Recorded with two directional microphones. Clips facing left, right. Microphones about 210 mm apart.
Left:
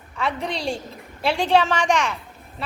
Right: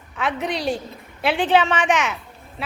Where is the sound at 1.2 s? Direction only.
Centre (ahead or behind).